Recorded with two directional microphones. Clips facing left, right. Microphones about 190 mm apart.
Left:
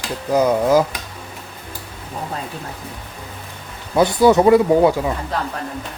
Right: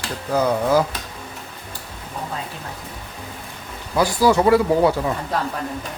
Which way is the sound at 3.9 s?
25° left (ahead or behind).